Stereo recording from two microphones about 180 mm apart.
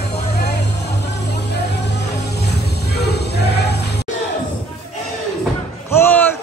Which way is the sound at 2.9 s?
65° left (ahead or behind).